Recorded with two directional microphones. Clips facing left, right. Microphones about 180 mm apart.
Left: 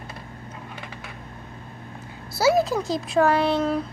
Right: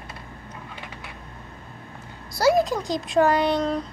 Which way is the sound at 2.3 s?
5° left (ahead or behind).